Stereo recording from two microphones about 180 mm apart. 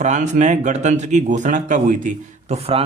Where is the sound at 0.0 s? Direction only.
40° right (ahead or behind).